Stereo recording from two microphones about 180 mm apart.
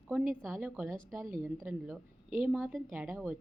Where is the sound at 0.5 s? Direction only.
5° right (ahead or behind).